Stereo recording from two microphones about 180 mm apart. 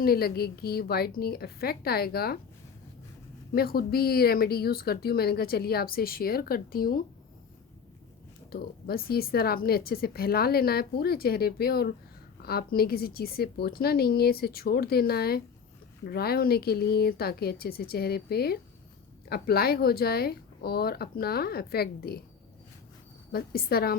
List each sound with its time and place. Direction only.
0.0 s speech: 55° left (ahead or behind)
3.5 s speech: 55° left (ahead or behind)
8.4 s speech: 55° left (ahead or behind)
23.3 s speech: 60° left (ahead or behind)